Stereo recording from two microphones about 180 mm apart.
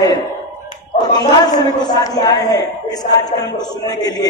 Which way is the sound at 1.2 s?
20° left (ahead or behind).